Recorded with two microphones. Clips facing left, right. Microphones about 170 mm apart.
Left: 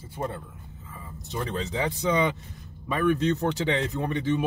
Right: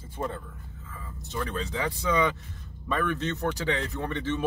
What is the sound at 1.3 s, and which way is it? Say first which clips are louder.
A man's voice: left 2 dB; 20° left (ahead or behind).